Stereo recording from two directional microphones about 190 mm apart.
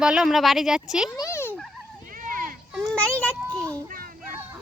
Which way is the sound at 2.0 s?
45° right (ahead or behind).